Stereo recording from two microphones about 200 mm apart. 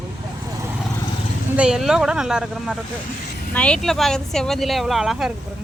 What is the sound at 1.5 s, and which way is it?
Speech, 5° right (ahead or behind).